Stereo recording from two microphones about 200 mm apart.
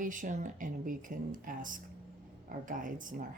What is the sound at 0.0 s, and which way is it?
Speech, 40° right (ahead or behind).